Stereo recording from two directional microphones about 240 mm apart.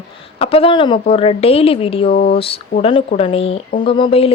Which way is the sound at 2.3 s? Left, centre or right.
Left.